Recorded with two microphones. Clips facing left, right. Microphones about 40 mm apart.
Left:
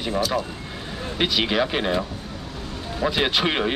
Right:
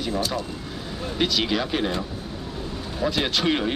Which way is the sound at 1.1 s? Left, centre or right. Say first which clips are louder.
Left 2 dB; left.